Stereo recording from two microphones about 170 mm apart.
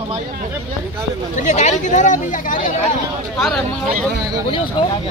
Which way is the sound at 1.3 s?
45° left (ahead or behind).